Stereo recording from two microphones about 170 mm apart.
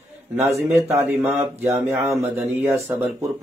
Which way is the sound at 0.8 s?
15° right (ahead or behind).